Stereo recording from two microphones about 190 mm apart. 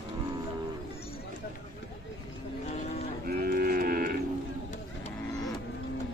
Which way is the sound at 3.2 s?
55° right (ahead or behind).